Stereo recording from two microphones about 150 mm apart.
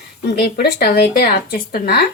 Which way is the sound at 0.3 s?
90° left.